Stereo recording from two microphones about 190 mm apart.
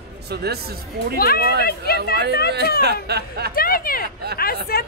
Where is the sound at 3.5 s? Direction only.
50° left (ahead or behind).